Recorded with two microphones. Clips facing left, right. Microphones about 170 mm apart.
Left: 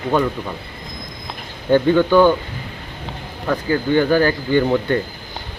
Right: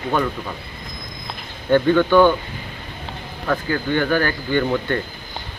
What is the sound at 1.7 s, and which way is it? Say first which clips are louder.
Speech: left 1 dB; 15° left (ahead or behind).